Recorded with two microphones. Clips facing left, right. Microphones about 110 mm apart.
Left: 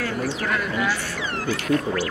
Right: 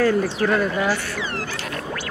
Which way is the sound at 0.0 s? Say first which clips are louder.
Right 7 dB; 35° right (ahead or behind).